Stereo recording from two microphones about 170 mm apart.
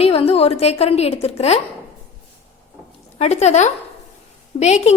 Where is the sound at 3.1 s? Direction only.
40° left (ahead or behind).